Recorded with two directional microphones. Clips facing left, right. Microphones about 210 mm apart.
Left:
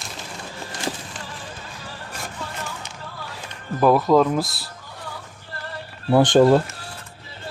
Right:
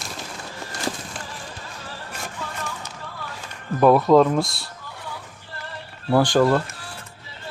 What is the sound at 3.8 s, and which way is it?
Speech, centre (ahead or behind).